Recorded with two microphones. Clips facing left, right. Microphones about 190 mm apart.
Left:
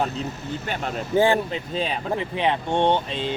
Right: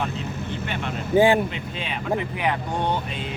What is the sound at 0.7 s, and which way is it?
Speech, 40° left (ahead or behind).